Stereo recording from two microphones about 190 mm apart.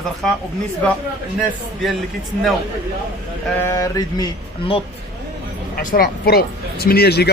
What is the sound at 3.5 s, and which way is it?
Mantra, 15° left (ahead or behind).